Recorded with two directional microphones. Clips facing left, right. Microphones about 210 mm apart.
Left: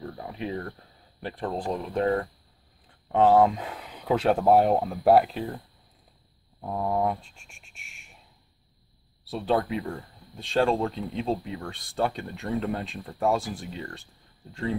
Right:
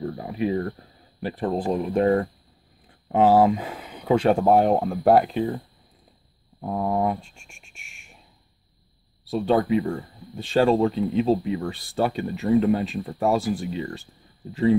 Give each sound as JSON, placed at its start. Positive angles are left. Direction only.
{"t": 0.2, "sound": "speech", "side_deg": -5}
{"t": 3.1, "sound": "speech", "side_deg": -5}
{"t": 6.6, "sound": "speech", "side_deg": -10}
{"t": 9.2, "sound": "speech", "side_deg": 0}